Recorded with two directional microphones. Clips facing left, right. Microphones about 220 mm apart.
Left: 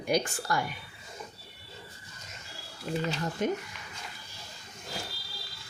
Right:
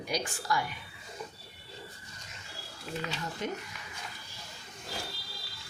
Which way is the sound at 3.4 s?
50° left (ahead or behind).